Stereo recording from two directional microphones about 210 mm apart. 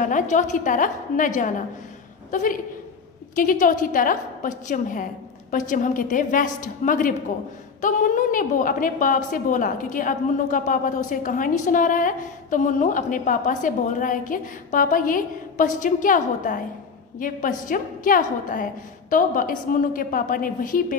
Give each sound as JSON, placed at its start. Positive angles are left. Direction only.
{"t": 0.0, "sound": "a woman's voice", "side_deg": 35}